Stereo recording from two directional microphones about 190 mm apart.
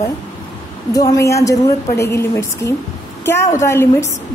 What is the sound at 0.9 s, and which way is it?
A woman's voice, 20° left (ahead or behind).